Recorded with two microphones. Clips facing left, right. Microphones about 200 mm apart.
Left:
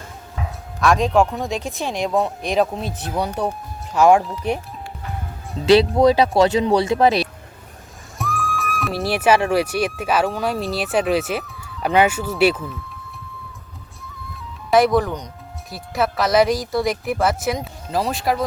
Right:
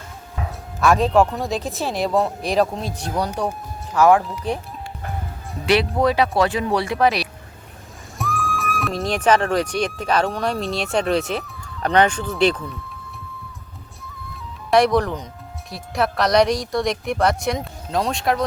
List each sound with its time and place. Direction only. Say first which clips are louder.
0.8 s speech: even; 5° right (ahead or behind)
3.9 s speech: left 1 dB; 25° left (ahead or behind)
5.5 s speech: left 5 dB; 25° left (ahead or behind)
8.2 s speech: even; centre (ahead or behind)
14.7 s speech: left 1 dB; centre (ahead or behind)